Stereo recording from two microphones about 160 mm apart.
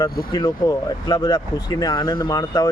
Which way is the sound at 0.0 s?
25° left (ahead or behind).